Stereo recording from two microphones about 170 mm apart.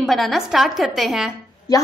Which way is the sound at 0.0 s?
Centre (ahead or behind).